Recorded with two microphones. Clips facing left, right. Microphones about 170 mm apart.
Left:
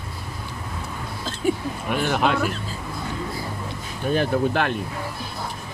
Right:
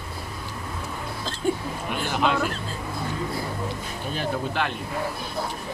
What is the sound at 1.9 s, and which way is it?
Speech, 55° left (ahead or behind).